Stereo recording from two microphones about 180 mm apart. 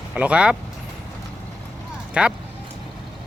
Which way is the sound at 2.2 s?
5° right (ahead or behind).